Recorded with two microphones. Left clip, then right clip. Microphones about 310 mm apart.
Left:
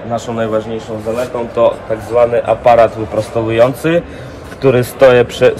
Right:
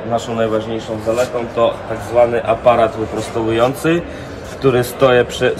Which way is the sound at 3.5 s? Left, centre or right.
Left.